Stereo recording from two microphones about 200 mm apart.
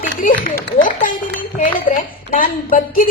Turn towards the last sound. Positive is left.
turn(degrees=45)  # may be behind; listen again after turning